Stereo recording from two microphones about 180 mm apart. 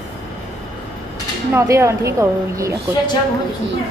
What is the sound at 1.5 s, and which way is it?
A woman's voice, 15° right (ahead or behind).